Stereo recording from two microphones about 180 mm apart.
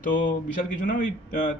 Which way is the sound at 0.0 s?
50° left (ahead or behind).